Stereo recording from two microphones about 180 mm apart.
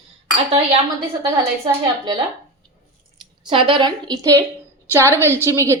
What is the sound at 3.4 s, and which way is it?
A woman's voice, 25° right (ahead or behind).